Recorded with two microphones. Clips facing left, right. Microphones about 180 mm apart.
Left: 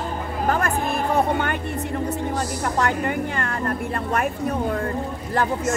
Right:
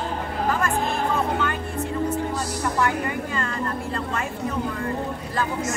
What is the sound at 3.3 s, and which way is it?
Speech, 60° left (ahead or behind).